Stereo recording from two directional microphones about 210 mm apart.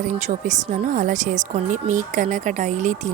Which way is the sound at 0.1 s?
35° right (ahead or behind).